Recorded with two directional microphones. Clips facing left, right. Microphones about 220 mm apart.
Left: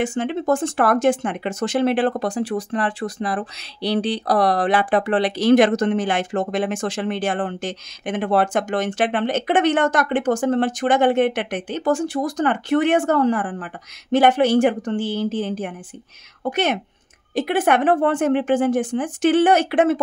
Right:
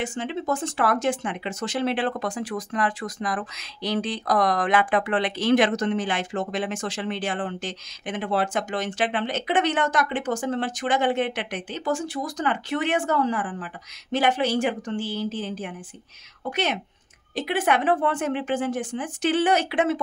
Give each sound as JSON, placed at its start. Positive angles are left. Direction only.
{"t": 0.0, "sound": "speech", "side_deg": 50}